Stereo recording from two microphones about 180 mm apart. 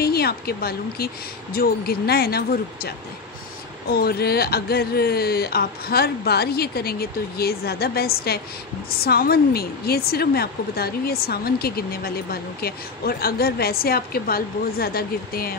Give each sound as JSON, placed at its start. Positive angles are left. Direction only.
{"t": 0.0, "sound": "speech", "side_deg": 60}
{"t": 3.9, "sound": "speech", "side_deg": 60}